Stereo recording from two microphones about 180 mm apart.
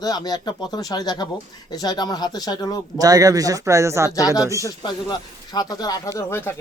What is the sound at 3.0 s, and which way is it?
Speech, 20° right (ahead or behind).